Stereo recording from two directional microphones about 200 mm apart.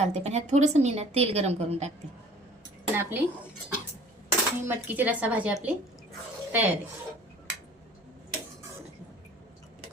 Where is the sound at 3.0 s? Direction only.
10° right (ahead or behind).